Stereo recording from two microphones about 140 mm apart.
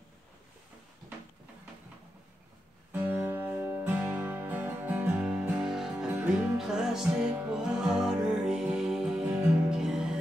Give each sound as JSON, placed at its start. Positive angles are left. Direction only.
{"t": 2.9, "sound": "music", "side_deg": -10}